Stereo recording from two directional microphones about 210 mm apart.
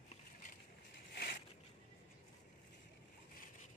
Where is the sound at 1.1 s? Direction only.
50° left (ahead or behind).